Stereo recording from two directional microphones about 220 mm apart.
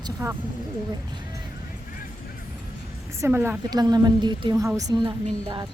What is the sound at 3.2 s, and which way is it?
A woman's voice, 10° right (ahead or behind).